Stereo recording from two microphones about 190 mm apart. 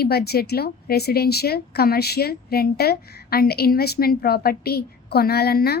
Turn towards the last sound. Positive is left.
turn(degrees=55)  # may be behind; listen again after turning